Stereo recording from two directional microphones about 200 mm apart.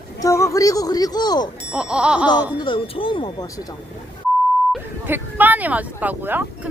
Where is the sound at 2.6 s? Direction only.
25° left (ahead or behind).